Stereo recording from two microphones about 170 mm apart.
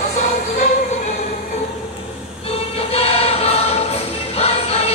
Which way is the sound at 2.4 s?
35° left (ahead or behind).